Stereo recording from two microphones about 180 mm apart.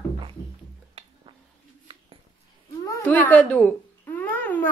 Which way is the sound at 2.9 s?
10° left (ahead or behind).